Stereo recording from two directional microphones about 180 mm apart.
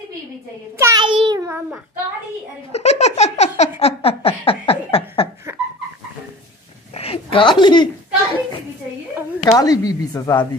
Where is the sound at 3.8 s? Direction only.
35° left (ahead or behind).